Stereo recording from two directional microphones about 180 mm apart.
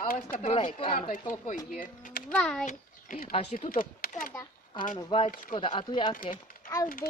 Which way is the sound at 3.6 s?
50° left (ahead or behind).